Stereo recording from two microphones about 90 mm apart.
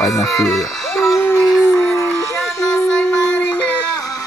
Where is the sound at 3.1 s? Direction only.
30° right (ahead or behind).